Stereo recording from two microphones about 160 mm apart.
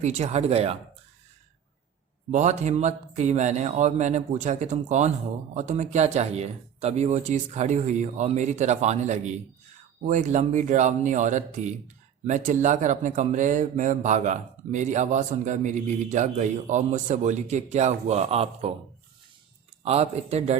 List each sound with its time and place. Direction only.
0.0 s speech: 45° right (ahead or behind)
2.3 s speech: 50° right (ahead or behind)
19.8 s speech: 40° right (ahead or behind)